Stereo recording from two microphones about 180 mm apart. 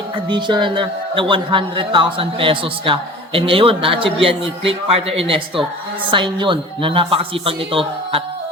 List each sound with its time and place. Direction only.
0.3 s a man's voice: 25° right (ahead or behind)